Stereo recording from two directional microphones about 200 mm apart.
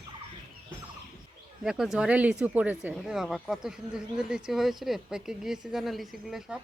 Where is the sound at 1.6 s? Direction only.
Centre (ahead or behind).